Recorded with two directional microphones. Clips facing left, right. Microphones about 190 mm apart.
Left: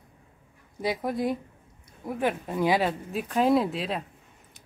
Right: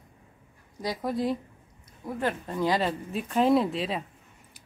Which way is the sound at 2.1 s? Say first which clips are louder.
Left 2 dB; 15° left (ahead or behind).